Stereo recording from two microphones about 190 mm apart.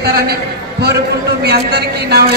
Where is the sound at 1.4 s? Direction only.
55° right (ahead or behind).